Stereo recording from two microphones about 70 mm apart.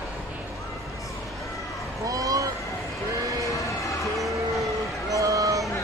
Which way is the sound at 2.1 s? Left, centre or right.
Right.